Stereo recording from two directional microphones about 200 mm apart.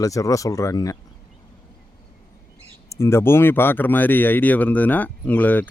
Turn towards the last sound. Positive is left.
turn(degrees=10)  # may be behind; listen again after turning